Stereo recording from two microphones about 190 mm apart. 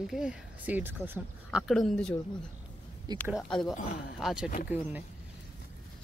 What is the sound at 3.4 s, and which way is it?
Speech, 5° left (ahead or behind).